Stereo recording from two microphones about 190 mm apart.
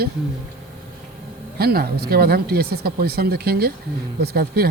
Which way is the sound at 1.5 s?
55° right (ahead or behind).